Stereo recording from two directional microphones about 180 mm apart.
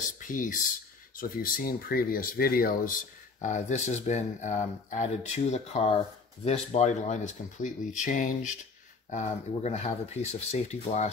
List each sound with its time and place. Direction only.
0.3 s speech: 45° left (ahead or behind)
3.3 s speech: 40° left (ahead or behind)